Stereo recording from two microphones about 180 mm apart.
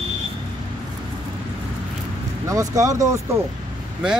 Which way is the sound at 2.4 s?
20° right (ahead or behind).